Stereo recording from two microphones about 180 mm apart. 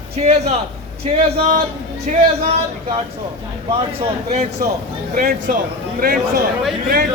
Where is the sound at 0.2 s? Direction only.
40° right (ahead or behind).